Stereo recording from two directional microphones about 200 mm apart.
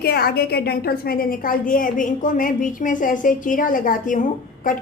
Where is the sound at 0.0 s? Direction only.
50° left (ahead or behind).